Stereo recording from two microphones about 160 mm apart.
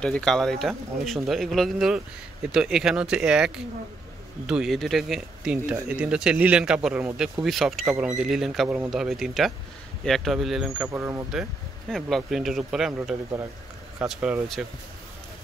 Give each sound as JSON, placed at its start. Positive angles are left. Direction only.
{"t": 0.0, "sound": "speech", "side_deg": 5}
{"t": 8.6, "sound": "speech", "side_deg": -10}
{"t": 8.9, "sound": "speech", "side_deg": 0}
{"t": 10.9, "sound": "speech", "side_deg": -15}
{"t": 11.9, "sound": "speech", "side_deg": 5}